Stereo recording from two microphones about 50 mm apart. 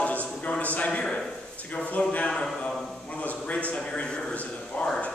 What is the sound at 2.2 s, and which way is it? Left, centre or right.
Speech, centre.